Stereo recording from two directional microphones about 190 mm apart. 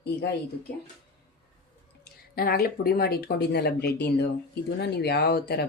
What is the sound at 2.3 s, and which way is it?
Speech, 50° left (ahead or behind).